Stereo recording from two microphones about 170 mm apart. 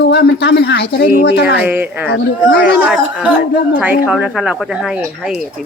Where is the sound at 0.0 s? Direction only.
75° left (ahead or behind).